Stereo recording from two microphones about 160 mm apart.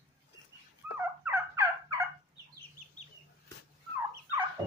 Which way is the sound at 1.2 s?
15° right (ahead or behind).